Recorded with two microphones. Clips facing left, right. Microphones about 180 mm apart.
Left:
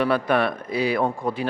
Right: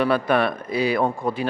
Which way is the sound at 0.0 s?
15° right (ahead or behind).